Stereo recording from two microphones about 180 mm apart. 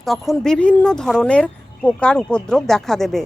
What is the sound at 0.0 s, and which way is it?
A woman's voice, centre (ahead or behind).